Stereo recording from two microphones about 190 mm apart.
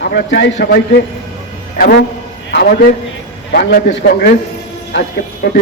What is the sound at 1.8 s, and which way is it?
A man's voice, 60° left (ahead or behind).